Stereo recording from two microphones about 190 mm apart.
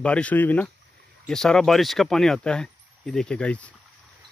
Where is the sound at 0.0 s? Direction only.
5° left (ahead or behind).